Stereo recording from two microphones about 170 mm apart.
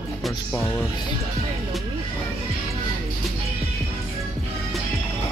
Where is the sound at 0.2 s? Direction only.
10° left (ahead or behind).